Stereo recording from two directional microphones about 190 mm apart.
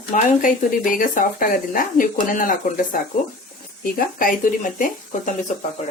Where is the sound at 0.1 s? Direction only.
45° left (ahead or behind).